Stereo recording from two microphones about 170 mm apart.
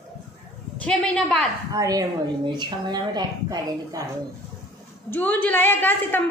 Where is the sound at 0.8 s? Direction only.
5° left (ahead or behind).